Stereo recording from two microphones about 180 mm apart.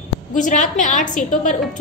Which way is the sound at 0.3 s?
45° left (ahead or behind).